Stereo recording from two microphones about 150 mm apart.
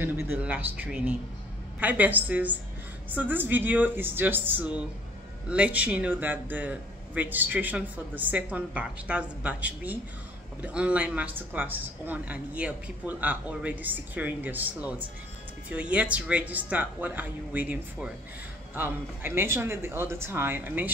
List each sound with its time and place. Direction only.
0.0 s speech: 10° right (ahead or behind)